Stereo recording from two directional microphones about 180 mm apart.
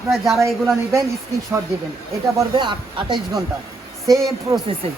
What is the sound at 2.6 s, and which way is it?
Speech, 25° right (ahead or behind).